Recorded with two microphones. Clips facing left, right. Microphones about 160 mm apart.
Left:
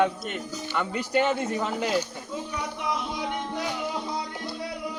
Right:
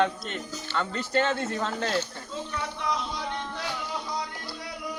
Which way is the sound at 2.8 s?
20° left (ahead or behind).